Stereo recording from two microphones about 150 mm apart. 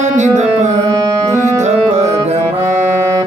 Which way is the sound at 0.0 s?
55° right (ahead or behind).